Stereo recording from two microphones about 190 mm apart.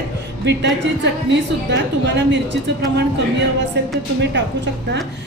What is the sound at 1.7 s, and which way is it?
Speech, 70° right (ahead or behind).